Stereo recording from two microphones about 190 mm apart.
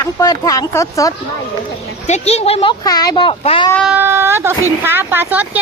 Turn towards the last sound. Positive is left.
turn(degrees=-10)  # may be behind; listen again after turning